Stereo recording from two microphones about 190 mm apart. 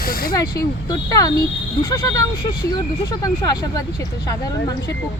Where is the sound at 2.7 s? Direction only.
20° left (ahead or behind).